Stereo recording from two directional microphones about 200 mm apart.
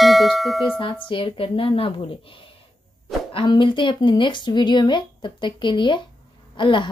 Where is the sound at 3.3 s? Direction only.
25° left (ahead or behind).